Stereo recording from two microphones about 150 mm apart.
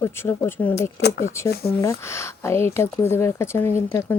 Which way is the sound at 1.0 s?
90° left.